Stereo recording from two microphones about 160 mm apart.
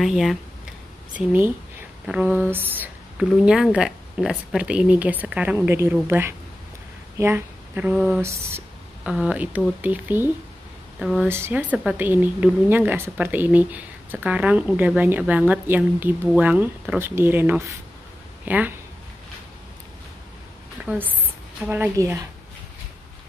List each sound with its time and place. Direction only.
0.0 s a woman's voice: centre (ahead or behind)
8.5 s a sound: 15° right (ahead or behind)
9.1 s a woman's voice: 5° right (ahead or behind)
11.2 s a woman's voice: 15° right (ahead or behind)
20.8 s a woman's voice: 5° right (ahead or behind)